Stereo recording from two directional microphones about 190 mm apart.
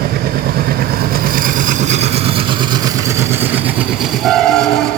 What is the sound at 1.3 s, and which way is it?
Vehicle, 45° right (ahead or behind).